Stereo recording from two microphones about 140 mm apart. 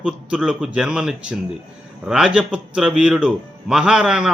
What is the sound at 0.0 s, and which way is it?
A man's voice, 5° right (ahead or behind).